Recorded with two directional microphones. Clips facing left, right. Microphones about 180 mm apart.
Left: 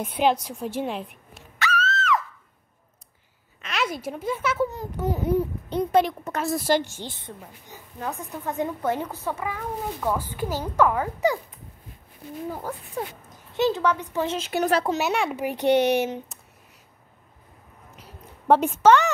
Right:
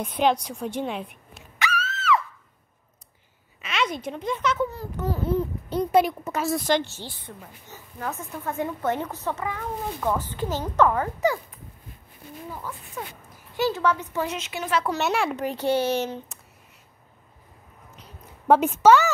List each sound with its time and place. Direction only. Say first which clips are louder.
0.0 s a woman's voice: even; 5° left (ahead or behind)
1.6 s screaming: left 3 dB; 15° right (ahead or behind)
3.6 s a woman's voice: right 1 dB; centre (ahead or behind)
4.6 s speech: left 2 dB; 20° left (ahead or behind)
5.9 s speech: right 1 dB; 10° right (ahead or behind); by 11.3 s 15° left (ahead or behind)
12.4 s speech: left 4 dB; 45° left (ahead or behind)
13.6 s speech: left 1 dB; 20° left (ahead or behind)
14.2 s speech: left 5 dB; 30° left (ahead or behind)
15.0 s a woman's voice: even; centre (ahead or behind)
15.4 s speech: left 6 dB; 15° left (ahead or behind)
18.5 s a woman's voice: right 1 dB; 5° right (ahead or behind)